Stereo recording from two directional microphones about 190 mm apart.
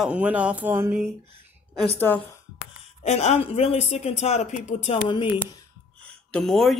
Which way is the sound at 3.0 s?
35° left (ahead or behind).